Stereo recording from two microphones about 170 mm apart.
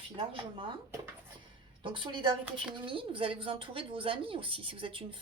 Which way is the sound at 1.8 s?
30° right (ahead or behind).